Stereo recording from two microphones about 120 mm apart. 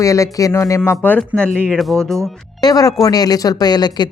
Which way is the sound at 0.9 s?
15° left (ahead or behind).